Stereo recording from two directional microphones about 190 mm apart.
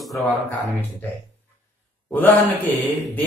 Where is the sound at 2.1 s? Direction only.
10° left (ahead or behind).